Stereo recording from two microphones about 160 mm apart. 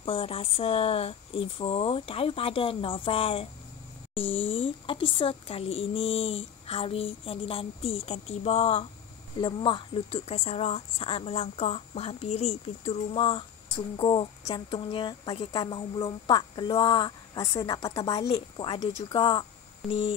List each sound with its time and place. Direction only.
0.0 s a woman's voice: 35° left (ahead or behind)